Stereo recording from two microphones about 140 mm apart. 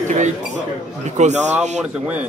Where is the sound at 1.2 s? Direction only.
55° right (ahead or behind).